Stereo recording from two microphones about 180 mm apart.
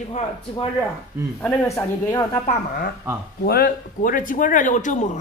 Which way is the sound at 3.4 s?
55° left (ahead or behind).